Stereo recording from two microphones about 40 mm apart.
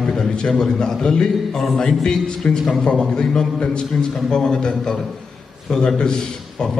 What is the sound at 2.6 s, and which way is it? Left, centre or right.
Speech, centre.